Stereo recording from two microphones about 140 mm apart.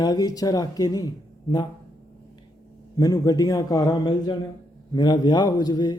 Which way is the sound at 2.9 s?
25° left (ahead or behind).